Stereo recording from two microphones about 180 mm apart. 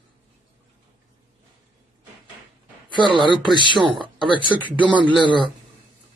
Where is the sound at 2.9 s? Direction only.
25° right (ahead or behind).